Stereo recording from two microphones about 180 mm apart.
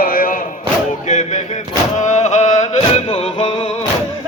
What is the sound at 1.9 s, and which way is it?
Chant, 40° left (ahead or behind).